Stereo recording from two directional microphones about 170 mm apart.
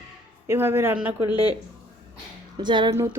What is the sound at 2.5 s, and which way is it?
Speech, 25° right (ahead or behind).